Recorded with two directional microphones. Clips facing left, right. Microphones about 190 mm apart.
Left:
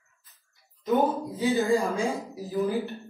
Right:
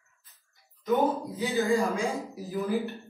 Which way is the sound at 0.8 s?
15° left (ahead or behind).